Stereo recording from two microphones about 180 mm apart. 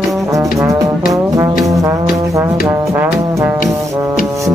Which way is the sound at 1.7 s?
15° right (ahead or behind).